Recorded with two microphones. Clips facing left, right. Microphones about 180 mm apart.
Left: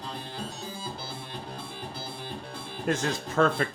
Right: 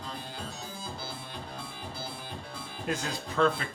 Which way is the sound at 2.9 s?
45° left (ahead or behind).